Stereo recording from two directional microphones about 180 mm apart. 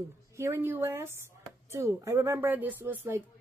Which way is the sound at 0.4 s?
15° right (ahead or behind).